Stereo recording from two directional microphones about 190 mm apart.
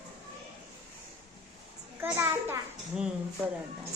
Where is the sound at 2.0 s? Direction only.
10° right (ahead or behind).